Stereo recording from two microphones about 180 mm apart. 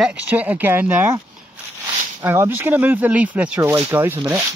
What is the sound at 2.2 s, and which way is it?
Speech, 10° right (ahead or behind).